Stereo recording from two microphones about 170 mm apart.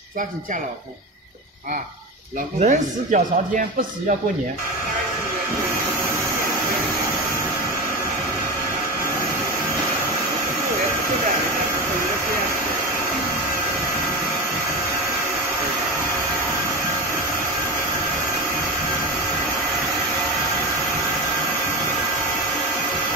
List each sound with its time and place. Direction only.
2.6 s speech: 45° right (ahead or behind)